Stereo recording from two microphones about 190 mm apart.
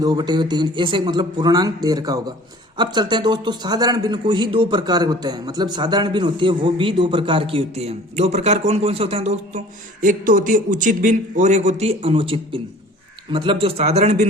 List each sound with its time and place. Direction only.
0.0 s a man's voice: 20° right (ahead or behind)